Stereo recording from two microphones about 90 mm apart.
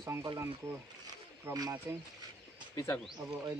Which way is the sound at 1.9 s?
25° right (ahead or behind).